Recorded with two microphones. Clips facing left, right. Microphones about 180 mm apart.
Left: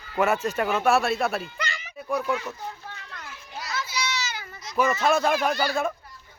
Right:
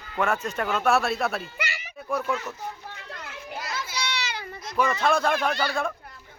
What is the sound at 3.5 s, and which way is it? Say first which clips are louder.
Children playing: left 1 dB; 55° right (ahead or behind).